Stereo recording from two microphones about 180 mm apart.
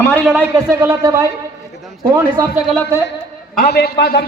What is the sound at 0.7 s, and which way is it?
Speech, 15° right (ahead or behind).